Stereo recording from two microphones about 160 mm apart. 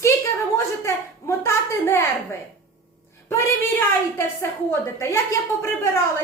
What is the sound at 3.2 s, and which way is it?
A woman's voice, 15° left (ahead or behind).